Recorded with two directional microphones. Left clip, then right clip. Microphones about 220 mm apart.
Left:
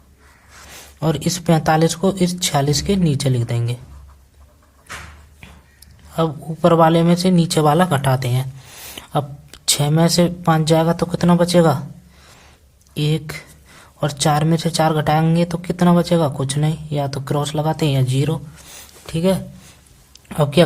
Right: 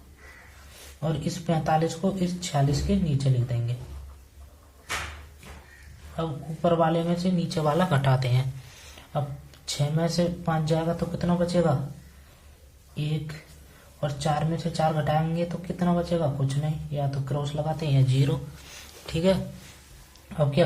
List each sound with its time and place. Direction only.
0.9 s speech: 50° left (ahead or behind)
6.1 s speech: 50° left (ahead or behind)
9.0 s a woman's voice: 50° left (ahead or behind)
12.9 s speech: 50° left (ahead or behind)
20.2 s a sound: 45° left (ahead or behind)